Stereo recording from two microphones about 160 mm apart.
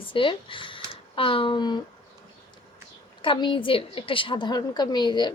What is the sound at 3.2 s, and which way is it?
A woman's voice, 30° left (ahead or behind).